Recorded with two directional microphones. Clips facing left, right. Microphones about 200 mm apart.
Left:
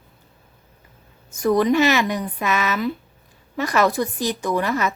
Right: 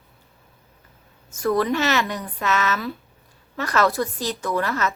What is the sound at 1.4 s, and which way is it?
Speech, 15° left (ahead or behind).